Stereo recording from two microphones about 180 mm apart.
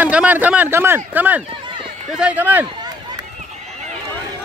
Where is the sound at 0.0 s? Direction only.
10° right (ahead or behind).